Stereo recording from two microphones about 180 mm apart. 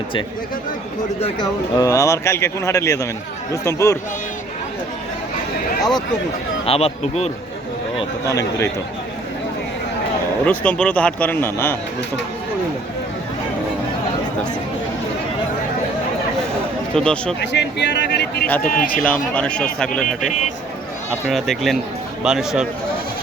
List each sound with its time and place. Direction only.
1.2 s speech: 25° left (ahead or behind)
6.7 s speech: 35° left (ahead or behind)
8.4 s speech: 15° left (ahead or behind)
10.4 s speech: 10° left (ahead or behind)
16.9 s speech: 5° left (ahead or behind)
17.4 s speech: 75° left (ahead or behind)
18.6 s speech: 50° left (ahead or behind)
18.9 s speech: 5° left (ahead or behind)
21.2 s speech: centre (ahead or behind)